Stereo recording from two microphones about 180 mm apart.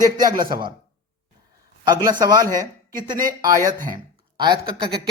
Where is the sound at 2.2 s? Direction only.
20° right (ahead or behind).